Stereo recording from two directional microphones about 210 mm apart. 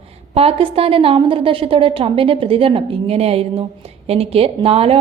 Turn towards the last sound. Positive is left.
turn(degrees=-25)  # may be behind; listen again after turning